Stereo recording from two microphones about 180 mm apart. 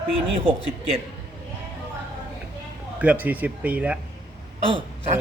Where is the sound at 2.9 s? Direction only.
10° right (ahead or behind).